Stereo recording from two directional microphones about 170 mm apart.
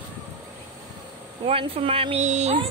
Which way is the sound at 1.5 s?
35° right (ahead or behind).